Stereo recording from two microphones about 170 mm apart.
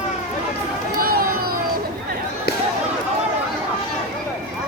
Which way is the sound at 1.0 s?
60° right (ahead or behind).